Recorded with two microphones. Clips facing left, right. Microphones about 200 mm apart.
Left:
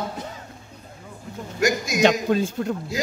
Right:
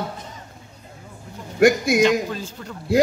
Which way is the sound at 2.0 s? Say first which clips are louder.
Left 2 dB; 60° left (ahead or behind).